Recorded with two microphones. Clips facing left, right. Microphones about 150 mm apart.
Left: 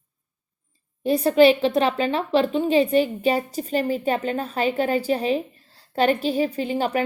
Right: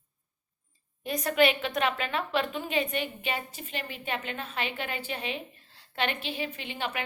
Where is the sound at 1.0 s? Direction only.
30° left (ahead or behind).